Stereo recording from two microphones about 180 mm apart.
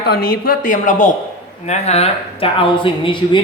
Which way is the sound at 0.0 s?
60° left (ahead or behind).